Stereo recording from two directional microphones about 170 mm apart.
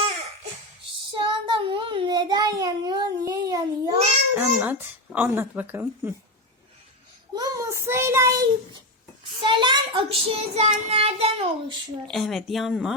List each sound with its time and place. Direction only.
1.1 s child singing: 30° right (ahead or behind)
4.4 s speech: 10° right (ahead or behind)
7.3 s child singing: 20° right (ahead or behind)
9.4 s a child's voice: 30° right (ahead or behind)
12.0 s speech: centre (ahead or behind)